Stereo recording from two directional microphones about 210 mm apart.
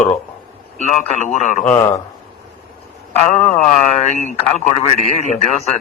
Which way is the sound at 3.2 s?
35° left (ahead or behind).